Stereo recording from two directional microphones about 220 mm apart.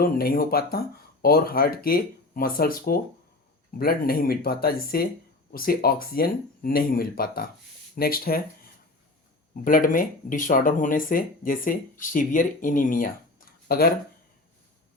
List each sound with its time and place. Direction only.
0.0 s speech: 45° left (ahead or behind)